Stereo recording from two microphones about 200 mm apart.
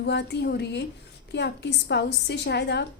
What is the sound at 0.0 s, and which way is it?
A woman's voice, 60° left (ahead or behind).